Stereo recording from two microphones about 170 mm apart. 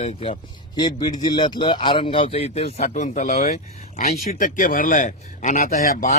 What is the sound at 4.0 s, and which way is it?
A man's voice, 55° left (ahead or behind).